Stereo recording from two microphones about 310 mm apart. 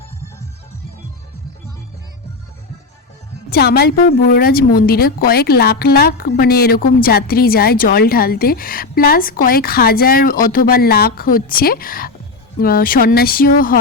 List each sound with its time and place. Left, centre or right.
3.5 s a woman's voice: left